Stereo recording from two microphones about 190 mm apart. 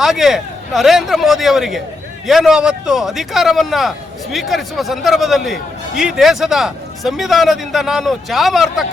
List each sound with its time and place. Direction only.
0.0 s a man's voice: centre (ahead or behind)